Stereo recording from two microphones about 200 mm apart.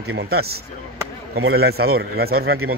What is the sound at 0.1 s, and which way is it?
Speech, 50° right (ahead or behind).